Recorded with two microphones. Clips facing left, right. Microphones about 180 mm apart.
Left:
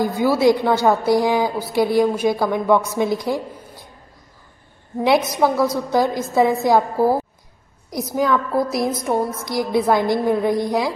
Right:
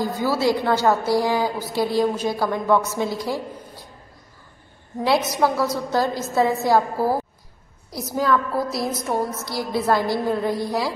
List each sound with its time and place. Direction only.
0.0 s a woman's voice: 15° left (ahead or behind)
5.4 s a woman's voice: 15° left (ahead or behind)